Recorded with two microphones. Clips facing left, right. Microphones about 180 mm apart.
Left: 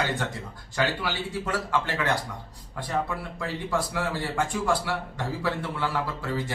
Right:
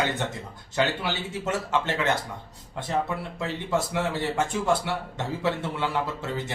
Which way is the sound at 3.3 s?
25° right (ahead or behind).